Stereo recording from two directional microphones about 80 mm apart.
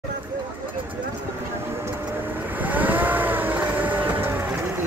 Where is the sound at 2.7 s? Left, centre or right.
Right.